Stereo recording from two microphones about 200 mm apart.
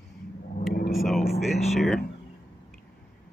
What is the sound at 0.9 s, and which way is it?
Speech, centre (ahead or behind).